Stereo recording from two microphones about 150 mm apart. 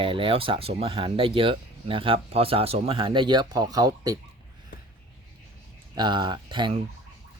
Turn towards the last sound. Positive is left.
turn(degrees=-30)  # may be behind; listen again after turning